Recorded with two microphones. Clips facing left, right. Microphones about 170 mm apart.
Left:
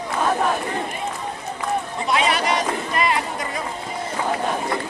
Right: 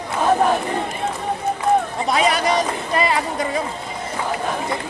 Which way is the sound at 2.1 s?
35° right (ahead or behind).